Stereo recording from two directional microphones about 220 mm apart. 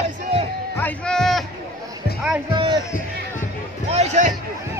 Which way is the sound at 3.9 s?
30° right (ahead or behind).